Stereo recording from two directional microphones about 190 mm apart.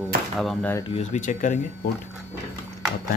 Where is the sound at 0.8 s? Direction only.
35° left (ahead or behind).